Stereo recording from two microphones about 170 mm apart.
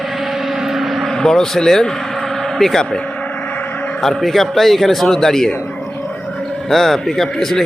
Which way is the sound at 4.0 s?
Centre (ahead or behind).